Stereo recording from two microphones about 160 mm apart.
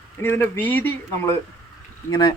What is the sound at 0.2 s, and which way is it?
A man's voice, 15° left (ahead or behind).